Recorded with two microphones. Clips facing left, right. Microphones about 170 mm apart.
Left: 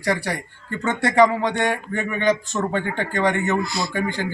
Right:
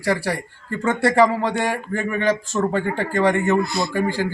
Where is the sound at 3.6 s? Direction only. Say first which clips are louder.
Right 3 dB; 55° right (ahead or behind).